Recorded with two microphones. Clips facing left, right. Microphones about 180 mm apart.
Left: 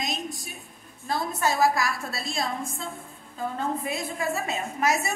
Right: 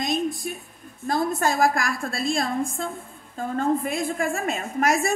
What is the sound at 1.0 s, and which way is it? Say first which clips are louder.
A woman's voice: right 4 dB; 50° right (ahead or behind).